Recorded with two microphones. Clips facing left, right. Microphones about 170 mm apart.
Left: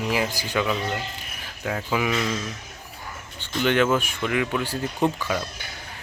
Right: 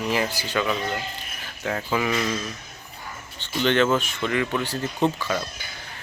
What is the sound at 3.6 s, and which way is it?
Speech, 10° left (ahead or behind).